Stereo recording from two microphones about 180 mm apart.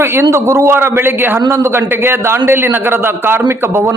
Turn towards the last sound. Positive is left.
turn(degrees=-15)  # may be behind; listen again after turning